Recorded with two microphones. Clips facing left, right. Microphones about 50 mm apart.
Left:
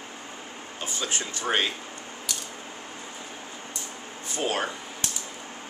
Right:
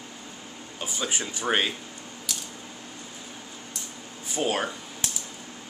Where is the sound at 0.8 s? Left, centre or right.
Centre.